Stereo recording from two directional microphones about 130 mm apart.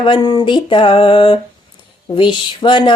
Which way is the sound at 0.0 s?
40° left (ahead or behind).